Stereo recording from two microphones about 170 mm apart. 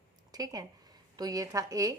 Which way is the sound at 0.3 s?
20° right (ahead or behind).